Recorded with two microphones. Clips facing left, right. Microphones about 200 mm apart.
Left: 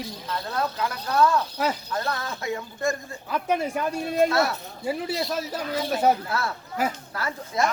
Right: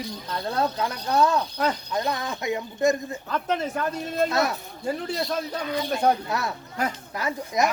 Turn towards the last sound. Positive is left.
turn(degrees=-15)  # may be behind; listen again after turning